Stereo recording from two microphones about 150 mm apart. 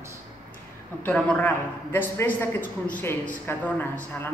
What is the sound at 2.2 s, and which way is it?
Speech, 65° left (ahead or behind).